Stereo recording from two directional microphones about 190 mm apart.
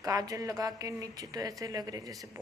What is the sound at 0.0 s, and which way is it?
A woman's voice, 20° right (ahead or behind).